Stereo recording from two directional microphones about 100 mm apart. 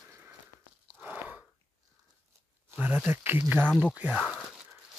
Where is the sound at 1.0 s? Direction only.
15° right (ahead or behind).